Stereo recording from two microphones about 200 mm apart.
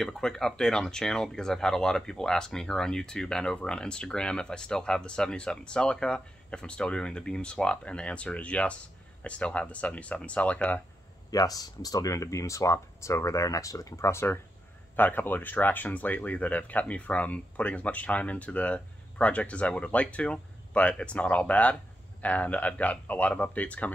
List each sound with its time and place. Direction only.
0.0 s speech: 5° left (ahead or behind)
11.2 s speech: 20° left (ahead or behind)